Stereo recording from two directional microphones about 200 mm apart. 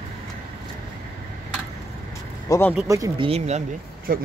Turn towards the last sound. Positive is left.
turn(degrees=-40)  # may be behind; listen again after turning